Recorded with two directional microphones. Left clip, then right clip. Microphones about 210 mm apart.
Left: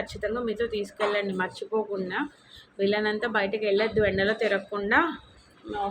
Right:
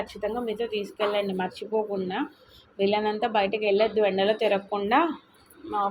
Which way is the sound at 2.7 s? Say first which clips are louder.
Right 1 dB; 30° left (ahead or behind).